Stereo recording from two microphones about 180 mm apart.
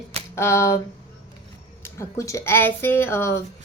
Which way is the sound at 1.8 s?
15° left (ahead or behind).